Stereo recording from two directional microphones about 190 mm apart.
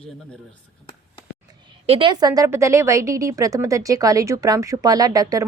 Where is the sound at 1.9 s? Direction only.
25° right (ahead or behind).